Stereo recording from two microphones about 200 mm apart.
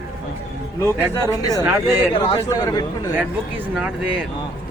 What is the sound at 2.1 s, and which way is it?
Speech, 25° left (ahead or behind).